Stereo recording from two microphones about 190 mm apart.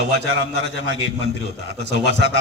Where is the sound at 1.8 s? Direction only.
60° right (ahead or behind).